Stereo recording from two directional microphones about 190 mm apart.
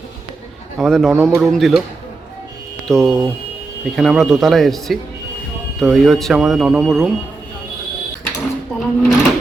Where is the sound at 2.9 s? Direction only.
20° right (ahead or behind).